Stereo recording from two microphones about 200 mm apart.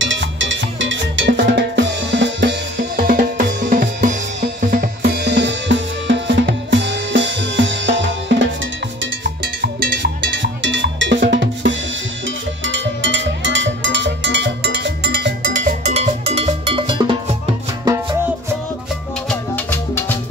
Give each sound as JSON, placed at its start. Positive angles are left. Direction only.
{"t": 0.0, "sound": "music", "side_deg": -65}
{"t": 1.4, "sound": "drum", "side_deg": -55}
{"t": 3.0, "sound": "drum", "side_deg": -45}
{"t": 4.0, "sound": "music", "side_deg": -40}
{"t": 9.0, "sound": "cowbell", "side_deg": -60}
{"t": 19.2, "sound": "music", "side_deg": 10}